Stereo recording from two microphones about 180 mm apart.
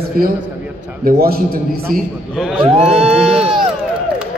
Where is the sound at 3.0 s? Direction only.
Centre (ahead or behind).